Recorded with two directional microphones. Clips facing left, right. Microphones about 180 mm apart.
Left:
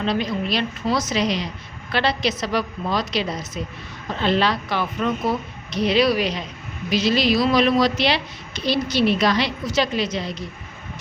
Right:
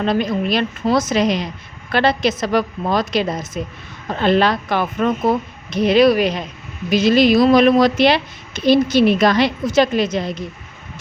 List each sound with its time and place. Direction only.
0.0 s a woman's voice: 50° right (ahead or behind)